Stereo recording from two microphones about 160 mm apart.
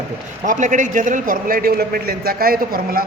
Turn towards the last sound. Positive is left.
turn(degrees=-65)  # may be behind; listen again after turning